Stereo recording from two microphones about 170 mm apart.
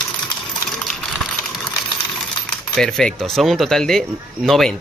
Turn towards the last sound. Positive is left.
turn(degrees=0)  # may be behind; listen again after turning